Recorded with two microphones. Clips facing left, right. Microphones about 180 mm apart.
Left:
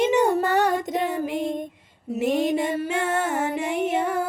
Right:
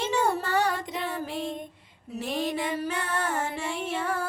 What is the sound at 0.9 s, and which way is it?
Child singing, 45° left (ahead or behind).